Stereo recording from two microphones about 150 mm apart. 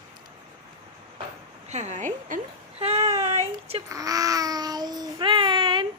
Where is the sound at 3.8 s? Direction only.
20° right (ahead or behind).